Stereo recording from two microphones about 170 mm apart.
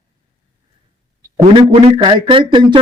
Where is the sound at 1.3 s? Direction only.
25° right (ahead or behind).